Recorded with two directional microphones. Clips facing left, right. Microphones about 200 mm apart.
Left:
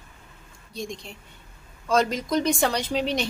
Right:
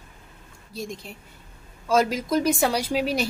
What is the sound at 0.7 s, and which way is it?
A woman's voice, 5° right (ahead or behind).